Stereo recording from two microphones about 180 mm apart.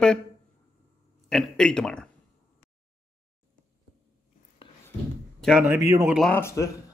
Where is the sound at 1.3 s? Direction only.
Centre (ahead or behind).